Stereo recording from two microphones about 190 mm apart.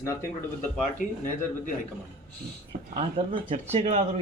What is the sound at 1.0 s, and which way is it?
Speech, 45° left (ahead or behind).